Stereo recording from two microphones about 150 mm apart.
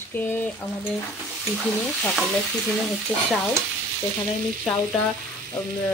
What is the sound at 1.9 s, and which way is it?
Speech, 5° left (ahead or behind).